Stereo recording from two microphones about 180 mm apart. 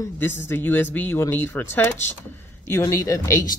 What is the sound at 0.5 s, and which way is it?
Speech, 10° left (ahead or behind).